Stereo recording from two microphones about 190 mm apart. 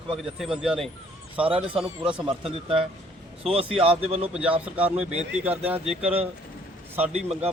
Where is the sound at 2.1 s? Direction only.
25° right (ahead or behind).